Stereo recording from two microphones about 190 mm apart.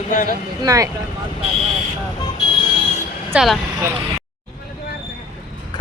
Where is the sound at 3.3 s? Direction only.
Centre (ahead or behind).